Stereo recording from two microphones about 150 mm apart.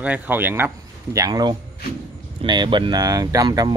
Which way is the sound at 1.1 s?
25° right (ahead or behind).